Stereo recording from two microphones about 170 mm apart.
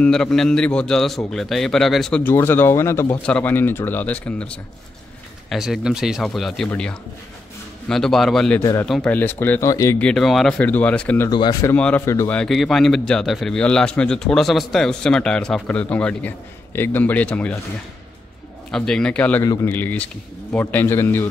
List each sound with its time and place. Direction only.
0.0 s a man's voice: 5° left (ahead or behind)
8.5 s speech: 15° left (ahead or behind)
8.8 s speech: 5° left (ahead or behind)
9.9 s speech: 5° left (ahead or behind)
11.2 s speech: 25° left (ahead or behind)
11.7 s speech: 10° left (ahead or behind)
12.4 s a man's voice: centre (ahead or behind)
18.7 s a man's voice: 5° left (ahead or behind)